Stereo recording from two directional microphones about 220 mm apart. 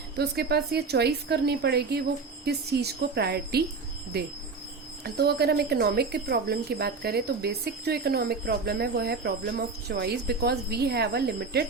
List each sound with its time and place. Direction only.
0.2 s speech: 45° right (ahead or behind)